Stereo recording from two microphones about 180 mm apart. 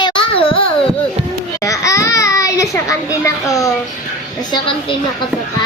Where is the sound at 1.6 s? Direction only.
20° left (ahead or behind).